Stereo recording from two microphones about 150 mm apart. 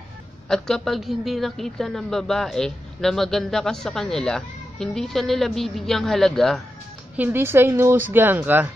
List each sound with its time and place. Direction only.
0.5 s speech: 5° left (ahead or behind)
7.2 s a woman's voice: 15° right (ahead or behind)